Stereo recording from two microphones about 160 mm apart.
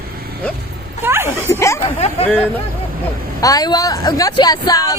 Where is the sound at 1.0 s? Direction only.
15° right (ahead or behind).